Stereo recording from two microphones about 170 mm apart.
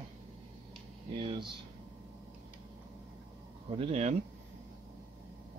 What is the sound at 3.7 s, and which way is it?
Speech, 35° right (ahead or behind).